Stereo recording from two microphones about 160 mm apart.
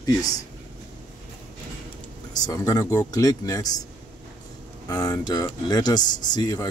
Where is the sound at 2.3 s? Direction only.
20° left (ahead or behind).